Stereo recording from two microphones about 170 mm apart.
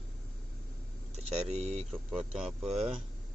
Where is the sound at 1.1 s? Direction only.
40° right (ahead or behind).